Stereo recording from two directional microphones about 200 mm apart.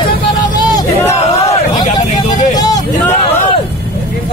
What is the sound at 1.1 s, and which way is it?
Crowd, 35° left (ahead or behind).